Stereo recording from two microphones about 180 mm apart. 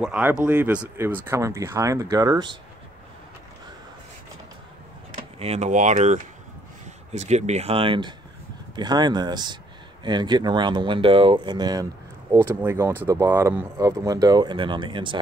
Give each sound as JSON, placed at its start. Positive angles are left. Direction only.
{"t": 0.0, "sound": "speech", "side_deg": -5}
{"t": 5.1, "sound": "speech", "side_deg": -35}